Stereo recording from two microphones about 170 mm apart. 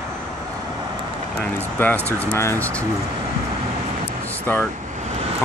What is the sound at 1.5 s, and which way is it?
Speech, 10° left (ahead or behind).